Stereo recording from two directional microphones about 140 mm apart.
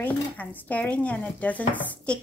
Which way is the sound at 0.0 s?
10° left (ahead or behind).